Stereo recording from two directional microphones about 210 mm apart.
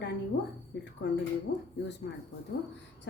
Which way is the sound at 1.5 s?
55° left (ahead or behind).